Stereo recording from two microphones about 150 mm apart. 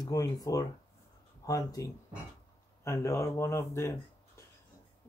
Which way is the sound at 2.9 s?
20° left (ahead or behind).